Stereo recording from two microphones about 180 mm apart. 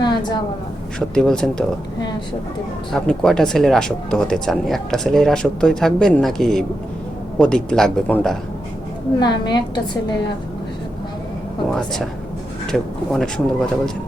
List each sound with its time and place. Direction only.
0.0 s a sound: 25° left (ahead or behind)
0.9 s speech: 5° left (ahead or behind)
2.9 s speech: 5° left (ahead or behind)
9.2 s a woman's voice: 25° left (ahead or behind)
11.7 s speech: centre (ahead or behind)